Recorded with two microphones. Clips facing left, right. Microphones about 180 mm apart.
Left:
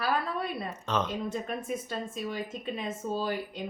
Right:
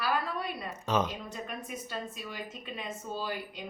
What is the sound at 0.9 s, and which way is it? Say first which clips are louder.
Speech: right 2 dB; 10° right (ahead or behind).